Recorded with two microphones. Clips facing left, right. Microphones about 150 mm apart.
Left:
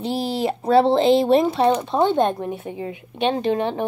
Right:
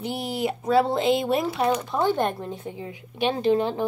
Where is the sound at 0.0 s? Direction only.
30° left (ahead or behind).